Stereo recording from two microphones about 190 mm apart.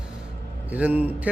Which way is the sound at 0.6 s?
10° right (ahead or behind).